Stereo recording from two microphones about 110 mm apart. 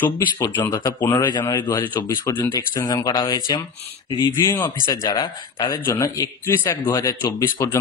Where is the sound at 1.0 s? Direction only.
20° left (ahead or behind).